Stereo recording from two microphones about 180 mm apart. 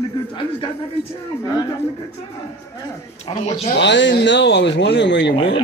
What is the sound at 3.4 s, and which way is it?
Speech, 35° left (ahead or behind).